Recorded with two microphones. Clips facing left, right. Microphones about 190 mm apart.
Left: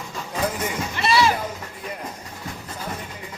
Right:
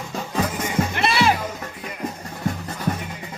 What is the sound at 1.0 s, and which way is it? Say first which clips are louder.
Music: left 2 dB; 55° right (ahead or behind).